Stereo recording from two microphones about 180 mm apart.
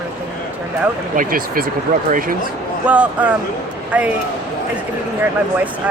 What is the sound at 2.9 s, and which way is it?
Speech, 5° right (ahead or behind).